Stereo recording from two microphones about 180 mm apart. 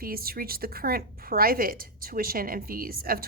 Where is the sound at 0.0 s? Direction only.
55° right (ahead or behind).